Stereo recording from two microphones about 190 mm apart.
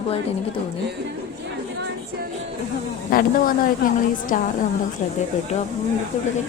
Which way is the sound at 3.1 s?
50° left (ahead or behind).